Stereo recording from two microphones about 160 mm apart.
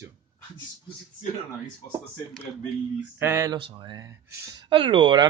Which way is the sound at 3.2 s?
15° right (ahead or behind).